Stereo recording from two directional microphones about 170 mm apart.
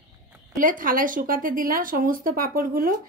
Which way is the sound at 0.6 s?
55° right (ahead or behind).